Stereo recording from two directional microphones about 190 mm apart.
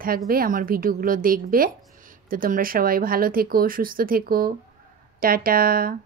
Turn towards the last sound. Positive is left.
turn(degrees=-50)  # may be behind; listen again after turning